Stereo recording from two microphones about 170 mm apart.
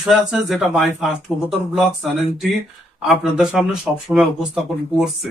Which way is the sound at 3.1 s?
5° right (ahead or behind).